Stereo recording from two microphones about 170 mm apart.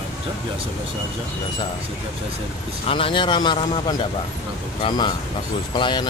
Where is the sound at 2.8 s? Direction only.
30° left (ahead or behind).